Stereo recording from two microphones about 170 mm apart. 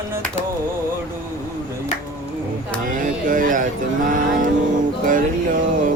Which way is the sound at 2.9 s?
55° right (ahead or behind).